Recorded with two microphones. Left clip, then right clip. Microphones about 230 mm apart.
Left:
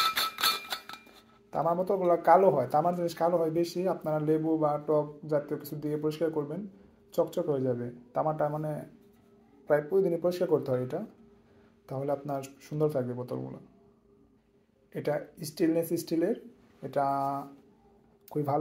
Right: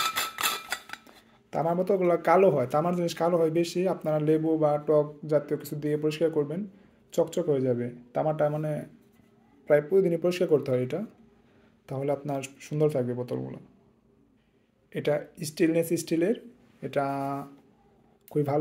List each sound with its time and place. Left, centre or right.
0.1 s a sound: centre
1.5 s speech: right
11.8 s speech: right
15.0 s speech: right